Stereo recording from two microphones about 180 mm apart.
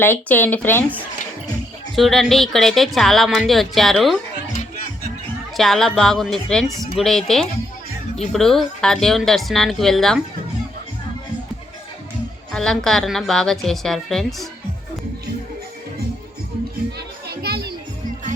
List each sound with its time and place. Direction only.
0.0 s speech: 10° left (ahead or behind)
5.5 s speech: centre (ahead or behind)
12.5 s speech: 5° left (ahead or behind)
17.2 s music: 60° right (ahead or behind)